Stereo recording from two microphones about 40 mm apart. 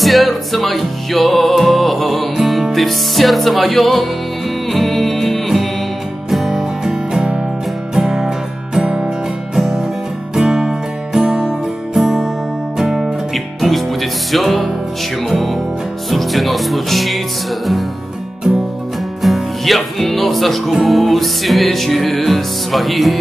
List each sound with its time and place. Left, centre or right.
0.0 s music: centre
6.5 s music: centre
9.6 s music: centre
19.2 s music: centre